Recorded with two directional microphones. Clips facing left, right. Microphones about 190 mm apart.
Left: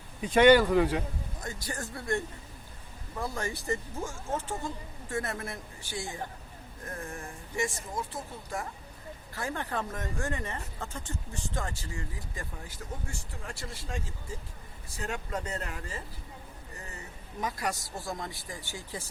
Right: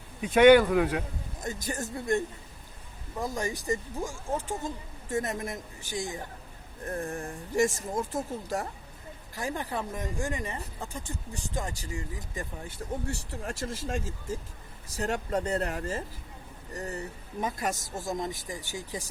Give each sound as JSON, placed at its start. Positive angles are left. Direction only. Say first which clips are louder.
{"t": 0.2, "sound": "a man's voice", "louder": "right 2 dB", "side_deg": -5}
{"t": 1.6, "sound": "speech", "louder": "right 4 dB", "side_deg": -20}
{"t": 6.8, "sound": "speech", "louder": "right 6 dB", "side_deg": -35}
{"t": 9.3, "sound": "speech", "louder": "right 1 dB", "side_deg": -15}
{"t": 13.1, "sound": "speech", "louder": "right 7 dB", "side_deg": -40}
{"t": 14.8, "sound": "speech", "louder": "right 6 dB", "side_deg": -40}
{"t": 17.4, "sound": "speech", "louder": "right 2 dB", "side_deg": -20}
{"t": 17.7, "sound": "speech", "louder": "right 3 dB", "side_deg": -45}
{"t": 18.1, "sound": "speech", "louder": "right 6 dB", "side_deg": -20}